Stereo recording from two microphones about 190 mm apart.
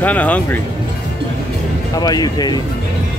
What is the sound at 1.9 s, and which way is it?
Speech, 20° left (ahead or behind).